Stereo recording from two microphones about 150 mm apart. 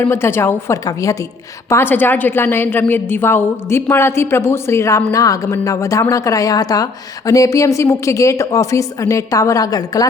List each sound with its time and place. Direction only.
0.0 s a woman's voice: 15° left (ahead or behind)